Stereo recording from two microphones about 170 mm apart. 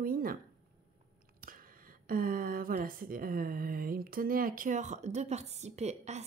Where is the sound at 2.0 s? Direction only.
55° right (ahead or behind).